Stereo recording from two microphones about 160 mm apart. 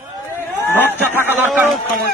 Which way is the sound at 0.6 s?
15° left (ahead or behind).